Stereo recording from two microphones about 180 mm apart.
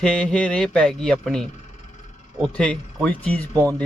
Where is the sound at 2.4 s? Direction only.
5° left (ahead or behind).